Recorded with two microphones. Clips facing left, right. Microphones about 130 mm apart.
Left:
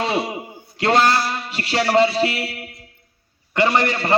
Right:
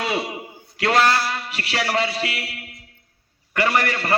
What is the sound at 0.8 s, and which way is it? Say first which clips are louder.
A man's voice: left 2 dB; 30° left (ahead or behind).